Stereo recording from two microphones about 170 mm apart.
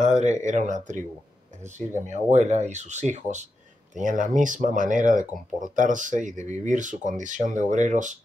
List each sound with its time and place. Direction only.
0.0 s a sound: 45° right (ahead or behind)
0.5 s speech: 45° right (ahead or behind)
2.0 s speech: 45° right (ahead or behind)